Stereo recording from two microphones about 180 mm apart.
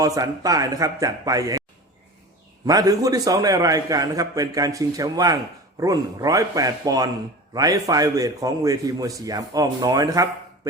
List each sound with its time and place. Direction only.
0.0 s a man's voice: 20° right (ahead or behind)
2.6 s a man's voice: 20° right (ahead or behind)